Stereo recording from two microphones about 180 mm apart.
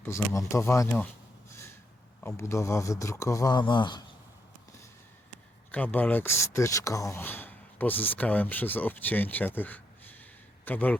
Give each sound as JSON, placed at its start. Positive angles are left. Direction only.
{"t": 0.0, "sound": "speech", "side_deg": 15}
{"t": 1.5, "sound": "a sound", "side_deg": 15}
{"t": 2.2, "sound": "speech", "side_deg": 15}
{"t": 5.7, "sound": "speech", "side_deg": 10}